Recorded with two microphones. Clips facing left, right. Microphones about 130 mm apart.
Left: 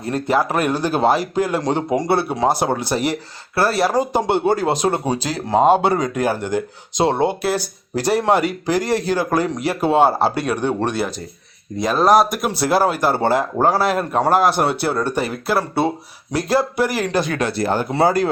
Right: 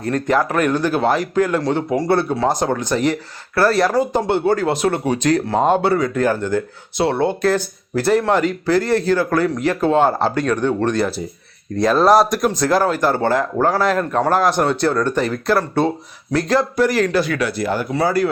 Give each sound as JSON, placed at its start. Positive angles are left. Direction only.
{"t": 0.0, "sound": "speech", "side_deg": 15}
{"t": 0.9, "sound": "speech", "side_deg": 25}
{"t": 1.5, "sound": "speech", "side_deg": 15}